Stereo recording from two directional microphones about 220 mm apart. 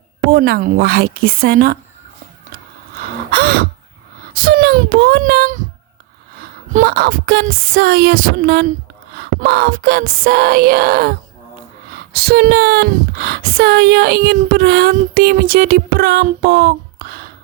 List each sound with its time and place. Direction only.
0.3 s speech: 45° right (ahead or behind)
3.3 s crow: 45° right (ahead or behind)
4.4 s speech: 45° right (ahead or behind)
6.7 s speech: 40° right (ahead or behind)